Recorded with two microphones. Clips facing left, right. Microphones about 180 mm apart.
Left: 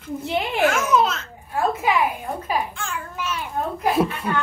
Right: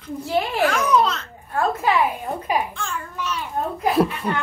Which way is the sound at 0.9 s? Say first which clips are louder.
Even; 5° left (ahead or behind).